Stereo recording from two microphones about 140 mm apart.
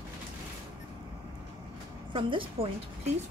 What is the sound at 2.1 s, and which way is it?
Speech, 40° right (ahead or behind).